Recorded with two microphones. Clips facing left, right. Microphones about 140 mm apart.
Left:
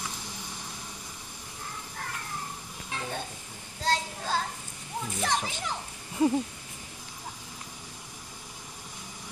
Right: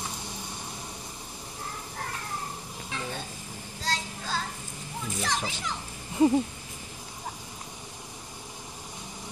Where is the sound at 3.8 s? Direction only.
55° left (ahead or behind).